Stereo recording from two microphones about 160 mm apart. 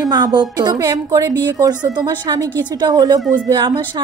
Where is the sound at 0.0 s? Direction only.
25° right (ahead or behind).